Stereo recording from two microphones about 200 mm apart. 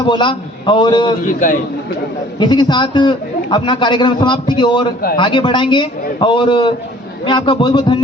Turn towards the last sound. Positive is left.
turn(degrees=25)  # may be behind; listen again after turning